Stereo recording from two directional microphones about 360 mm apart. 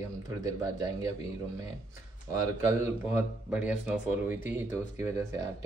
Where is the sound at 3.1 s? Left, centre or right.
Centre.